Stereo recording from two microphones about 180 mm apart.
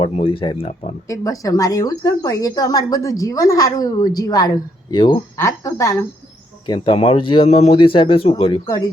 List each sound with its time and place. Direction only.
0.0 s speech: 30° left (ahead or behind)
1.0 s speech: 20° left (ahead or behind)
6.7 s speech: 25° left (ahead or behind)